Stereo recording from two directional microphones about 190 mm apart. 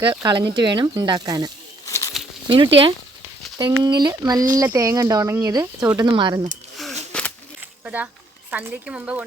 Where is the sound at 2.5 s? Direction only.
25° right (ahead or behind).